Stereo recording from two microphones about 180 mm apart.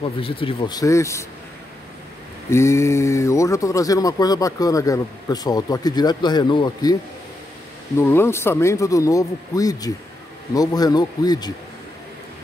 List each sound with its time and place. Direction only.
0.0 s speech: 30° left (ahead or behind)
2.5 s speech: 15° left (ahead or behind)
8.0 s speech: 15° left (ahead or behind)